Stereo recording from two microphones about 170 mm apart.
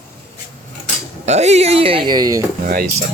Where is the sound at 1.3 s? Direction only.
40° right (ahead or behind); by 2.4 s 20° right (ahead or behind).